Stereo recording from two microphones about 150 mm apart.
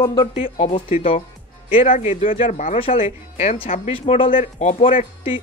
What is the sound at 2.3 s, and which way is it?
Speech, 45° left (ahead or behind).